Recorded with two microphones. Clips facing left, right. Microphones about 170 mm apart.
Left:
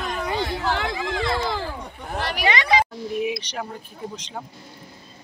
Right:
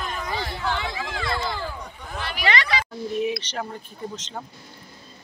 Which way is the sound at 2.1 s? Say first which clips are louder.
Left 5 dB; 70° left (ahead or behind).